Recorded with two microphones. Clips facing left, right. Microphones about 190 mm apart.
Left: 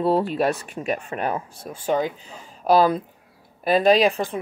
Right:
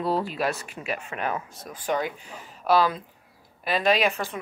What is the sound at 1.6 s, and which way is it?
Speech, 25° left (ahead or behind).